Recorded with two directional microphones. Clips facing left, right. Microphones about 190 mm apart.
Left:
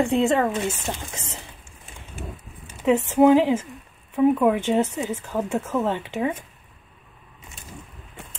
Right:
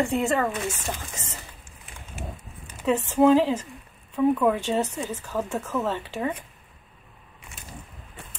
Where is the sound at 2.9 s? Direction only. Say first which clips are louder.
Left 3 dB; 15° left (ahead or behind).